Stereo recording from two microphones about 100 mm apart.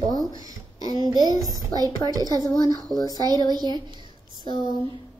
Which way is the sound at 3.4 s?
45° right (ahead or behind).